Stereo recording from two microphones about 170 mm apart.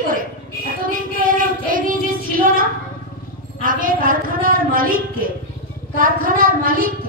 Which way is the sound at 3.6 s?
55° right (ahead or behind).